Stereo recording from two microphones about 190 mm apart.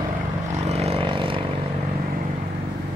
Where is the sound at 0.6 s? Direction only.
35° right (ahead or behind).